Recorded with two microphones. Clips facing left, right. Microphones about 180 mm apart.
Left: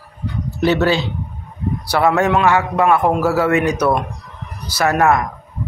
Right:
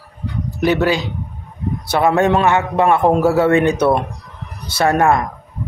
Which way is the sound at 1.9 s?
25° right (ahead or behind).